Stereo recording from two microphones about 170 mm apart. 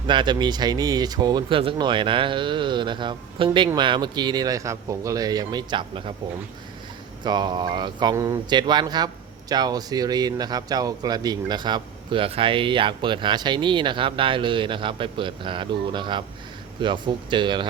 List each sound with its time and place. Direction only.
0.1 s speech: 25° right (ahead or behind)
7.3 s speech: 25° right (ahead or behind)